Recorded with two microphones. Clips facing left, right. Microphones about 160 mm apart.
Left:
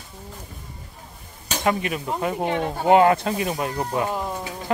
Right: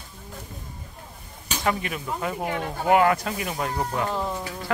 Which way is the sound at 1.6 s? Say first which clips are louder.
Left 3 dB; 20° left (ahead or behind).